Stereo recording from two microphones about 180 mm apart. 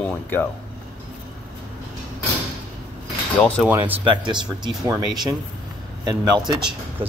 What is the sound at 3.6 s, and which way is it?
Speech, 10° right (ahead or behind).